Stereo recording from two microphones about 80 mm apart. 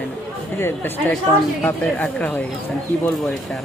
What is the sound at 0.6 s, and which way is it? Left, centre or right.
Speech, left.